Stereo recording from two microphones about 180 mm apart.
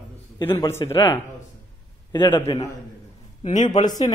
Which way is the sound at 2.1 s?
25° left (ahead or behind).